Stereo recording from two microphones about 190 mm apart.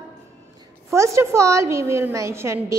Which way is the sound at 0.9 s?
15° right (ahead or behind).